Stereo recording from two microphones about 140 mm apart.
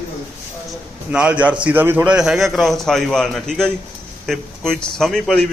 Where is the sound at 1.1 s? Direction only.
10° right (ahead or behind).